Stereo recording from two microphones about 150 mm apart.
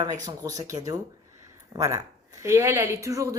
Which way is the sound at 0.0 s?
25° right (ahead or behind).